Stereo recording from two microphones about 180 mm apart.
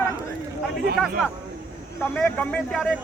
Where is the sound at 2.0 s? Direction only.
10° left (ahead or behind).